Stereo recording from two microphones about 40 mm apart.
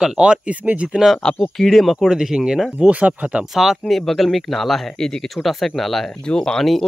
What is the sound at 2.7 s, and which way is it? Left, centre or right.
Speech, right.